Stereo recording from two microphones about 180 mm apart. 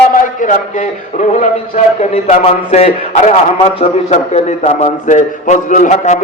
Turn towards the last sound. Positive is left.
turn(degrees=40)  # may be behind; listen again after turning